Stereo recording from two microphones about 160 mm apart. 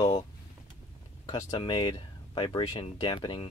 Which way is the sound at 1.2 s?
30° left (ahead or behind).